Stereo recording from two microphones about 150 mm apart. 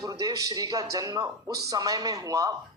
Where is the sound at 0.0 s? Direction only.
25° right (ahead or behind).